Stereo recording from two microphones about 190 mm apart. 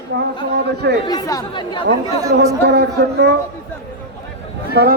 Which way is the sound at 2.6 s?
60° right (ahead or behind).